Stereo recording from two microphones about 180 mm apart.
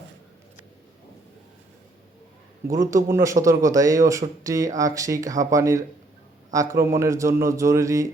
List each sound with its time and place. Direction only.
2.6 s a man's voice: 20° right (ahead or behind)